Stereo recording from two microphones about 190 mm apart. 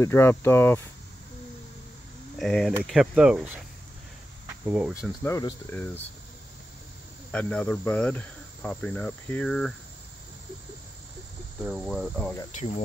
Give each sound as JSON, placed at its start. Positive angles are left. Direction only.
{"t": 0.0, "sound": "cricket", "side_deg": 15}
{"t": 2.3, "sound": "speech", "side_deg": 0}
{"t": 4.6, "sound": "speech", "side_deg": -5}
{"t": 5.2, "sound": "cricket", "side_deg": 15}
{"t": 7.2, "sound": "cricket", "side_deg": 5}
{"t": 11.6, "sound": "speech", "side_deg": 0}
{"t": 12.5, "sound": "speech", "side_deg": 35}